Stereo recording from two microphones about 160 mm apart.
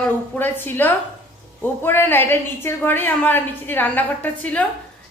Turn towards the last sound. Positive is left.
turn(degrees=10)  # may be behind; listen again after turning